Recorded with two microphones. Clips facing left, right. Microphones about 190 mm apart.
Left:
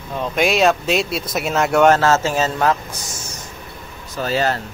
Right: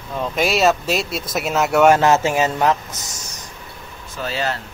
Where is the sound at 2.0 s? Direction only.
15° right (ahead or behind).